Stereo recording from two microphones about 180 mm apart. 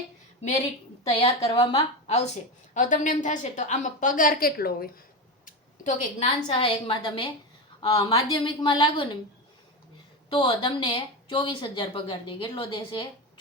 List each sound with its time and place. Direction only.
1.1 s a woman's voice: 35° left (ahead or behind); by 4.9 s 55° left (ahead or behind)
5.5 s a woman's voice: 40° left (ahead or behind); by 9.1 s 25° left (ahead or behind)
10.2 s a woman's voice: 30° left (ahead or behind)